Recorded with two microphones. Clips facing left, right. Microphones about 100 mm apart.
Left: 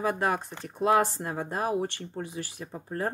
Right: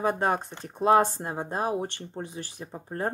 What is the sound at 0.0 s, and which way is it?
Speech, 30° right (ahead or behind).